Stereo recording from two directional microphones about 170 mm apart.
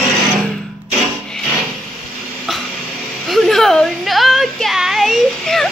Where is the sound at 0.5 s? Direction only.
5° left (ahead or behind).